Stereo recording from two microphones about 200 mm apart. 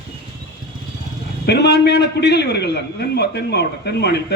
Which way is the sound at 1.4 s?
55° left (ahead or behind).